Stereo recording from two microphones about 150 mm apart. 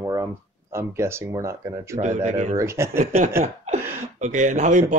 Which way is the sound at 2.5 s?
20° right (ahead or behind).